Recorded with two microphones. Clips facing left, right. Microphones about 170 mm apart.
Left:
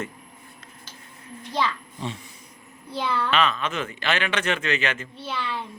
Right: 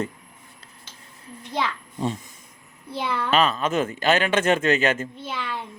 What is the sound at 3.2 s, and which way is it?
Speech, 45° right (ahead or behind).